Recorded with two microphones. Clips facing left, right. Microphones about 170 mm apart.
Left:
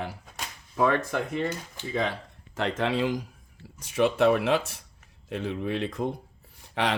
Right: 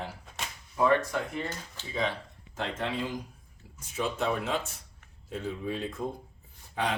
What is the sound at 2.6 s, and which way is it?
Speech, 85° left.